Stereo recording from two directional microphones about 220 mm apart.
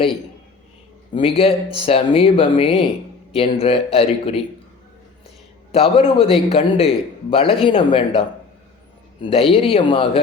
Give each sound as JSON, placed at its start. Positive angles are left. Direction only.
{"t": 1.1, "sound": "speech", "side_deg": 25}
{"t": 5.7, "sound": "speech", "side_deg": 25}
{"t": 9.2, "sound": "speech", "side_deg": 25}